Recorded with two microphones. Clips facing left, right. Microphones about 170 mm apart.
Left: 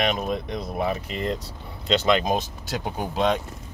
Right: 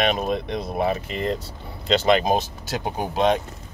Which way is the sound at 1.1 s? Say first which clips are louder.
Right 2 dB; centre (ahead or behind).